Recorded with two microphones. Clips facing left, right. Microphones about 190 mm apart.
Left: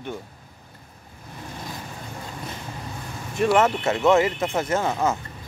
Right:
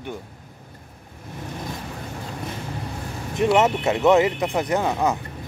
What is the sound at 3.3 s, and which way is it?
Speech, 20° right (ahead or behind).